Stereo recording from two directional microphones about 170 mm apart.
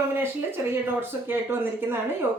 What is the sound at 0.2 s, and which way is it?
A woman's voice, 15° right (ahead or behind).